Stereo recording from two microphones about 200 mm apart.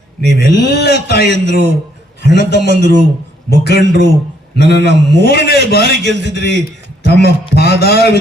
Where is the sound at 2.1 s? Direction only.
55° left (ahead or behind).